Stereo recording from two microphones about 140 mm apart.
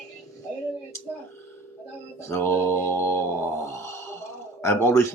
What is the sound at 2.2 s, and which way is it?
Speech, 15° left (ahead or behind).